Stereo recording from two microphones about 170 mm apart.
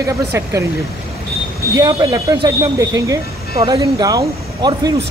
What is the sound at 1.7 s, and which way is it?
Speech, 20° right (ahead or behind).